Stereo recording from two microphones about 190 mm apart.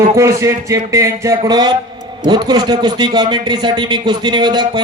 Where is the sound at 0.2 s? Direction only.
15° right (ahead or behind).